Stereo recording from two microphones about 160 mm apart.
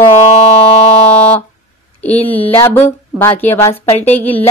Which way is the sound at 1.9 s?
10° left (ahead or behind).